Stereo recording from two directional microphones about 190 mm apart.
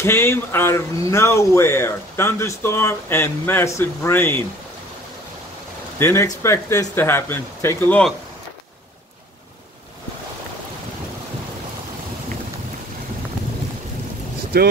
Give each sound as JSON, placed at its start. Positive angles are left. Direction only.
{"t": 0.0, "sound": "speech", "side_deg": 15}
{"t": 5.9, "sound": "speech", "side_deg": 15}
{"t": 14.5, "sound": "speech", "side_deg": -55}